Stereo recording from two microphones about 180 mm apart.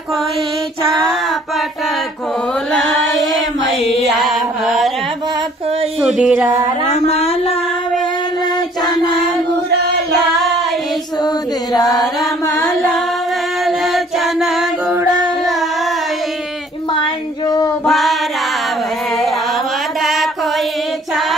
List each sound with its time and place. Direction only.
3.8 s music: 35° left (ahead or behind)
4.2 s mantra: centre (ahead or behind)
5.9 s a sound: 5° right (ahead or behind)
6.9 s a sound: 35° left (ahead or behind)
8.9 s child singing: 25° left (ahead or behind)
11.7 s chant: 20° left (ahead or behind)
13.7 s music: centre (ahead or behind)
17.8 s music: centre (ahead or behind)
20.0 s mantra: centre (ahead or behind)